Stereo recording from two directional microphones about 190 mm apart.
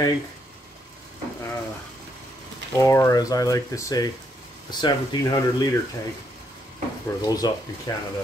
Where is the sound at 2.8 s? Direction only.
15° left (ahead or behind).